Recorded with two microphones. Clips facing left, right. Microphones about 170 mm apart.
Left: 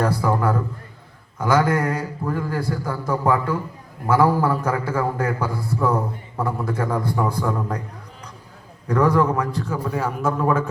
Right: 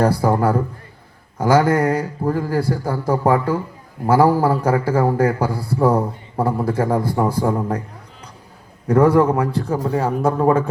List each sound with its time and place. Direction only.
0.0 s a man's voice: 30° right (ahead or behind)
1.4 s mantra: 30° right (ahead or behind)
2.5 s a man's voice: 30° right (ahead or behind)
7.3 s mantra: 30° right (ahead or behind)
8.9 s a man's voice: 30° right (ahead or behind)